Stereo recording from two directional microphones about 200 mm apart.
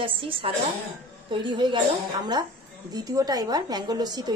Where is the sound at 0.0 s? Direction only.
25° right (ahead or behind).